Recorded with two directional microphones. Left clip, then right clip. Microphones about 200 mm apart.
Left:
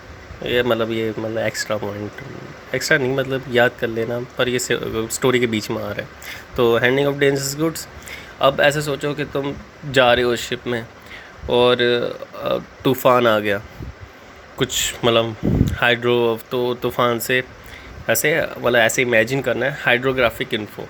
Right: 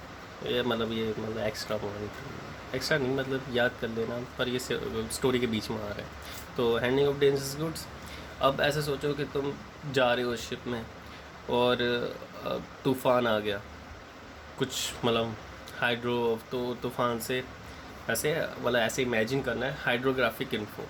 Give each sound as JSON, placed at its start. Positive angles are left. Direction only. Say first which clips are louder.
{"t": 0.4, "sound": "speech", "louder": "left 11 dB", "side_deg": 35}
{"t": 14.6, "sound": "speech", "louder": "left 11 dB", "side_deg": 35}